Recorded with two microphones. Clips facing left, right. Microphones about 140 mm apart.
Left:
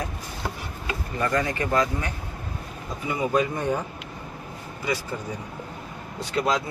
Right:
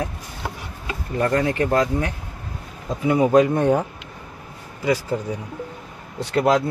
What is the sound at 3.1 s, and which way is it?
Speech, 70° right (ahead or behind).